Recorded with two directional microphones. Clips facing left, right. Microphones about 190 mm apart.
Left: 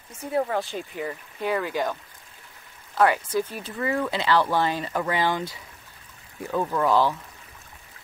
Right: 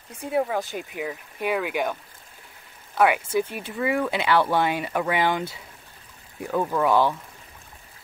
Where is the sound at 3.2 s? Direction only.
25° right (ahead or behind).